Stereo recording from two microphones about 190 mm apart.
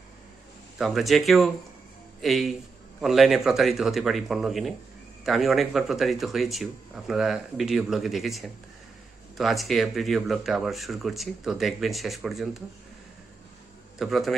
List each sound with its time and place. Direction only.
0.7 s speech: centre (ahead or behind)
13.9 s speech: centre (ahead or behind)